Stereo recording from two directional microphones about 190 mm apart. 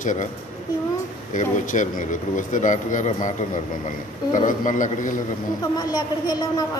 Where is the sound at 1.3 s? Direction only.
40° left (ahead or behind).